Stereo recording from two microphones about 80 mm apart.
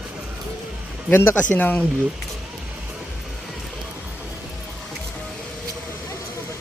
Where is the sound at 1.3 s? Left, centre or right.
Centre.